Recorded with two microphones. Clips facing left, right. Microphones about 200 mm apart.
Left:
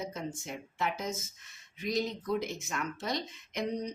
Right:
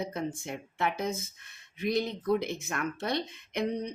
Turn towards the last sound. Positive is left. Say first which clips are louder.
# right 4 dB
turn(degrees=-60)  # may be behind; listen again after turning